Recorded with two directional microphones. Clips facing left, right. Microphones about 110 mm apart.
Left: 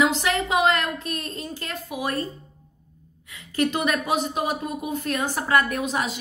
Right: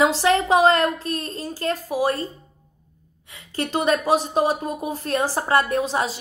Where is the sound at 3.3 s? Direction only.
30° right (ahead or behind).